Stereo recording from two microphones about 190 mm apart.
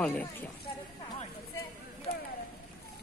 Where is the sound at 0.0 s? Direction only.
10° left (ahead or behind).